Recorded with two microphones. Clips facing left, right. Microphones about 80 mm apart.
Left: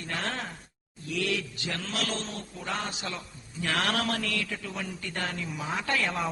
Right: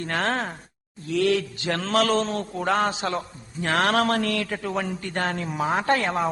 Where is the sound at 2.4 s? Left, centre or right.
Right.